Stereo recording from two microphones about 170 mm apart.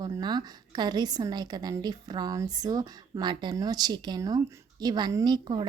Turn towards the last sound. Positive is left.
turn(degrees=-25)  # may be behind; listen again after turning